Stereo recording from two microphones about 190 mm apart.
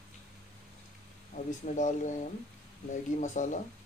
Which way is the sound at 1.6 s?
40° left (ahead or behind).